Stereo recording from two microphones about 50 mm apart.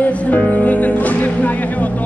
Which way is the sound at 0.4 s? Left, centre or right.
Left.